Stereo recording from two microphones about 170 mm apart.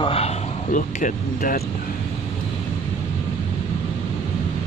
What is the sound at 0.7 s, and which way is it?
Speech, 50° left (ahead or behind).